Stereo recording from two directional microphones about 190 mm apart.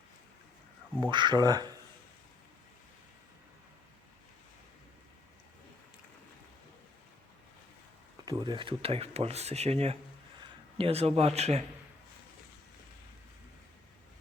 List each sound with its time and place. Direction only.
1.1 s speech: 25° right (ahead or behind)
8.2 s speech: 20° right (ahead or behind)